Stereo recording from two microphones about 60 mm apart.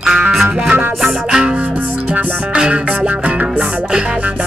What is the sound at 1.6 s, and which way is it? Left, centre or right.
Music, right.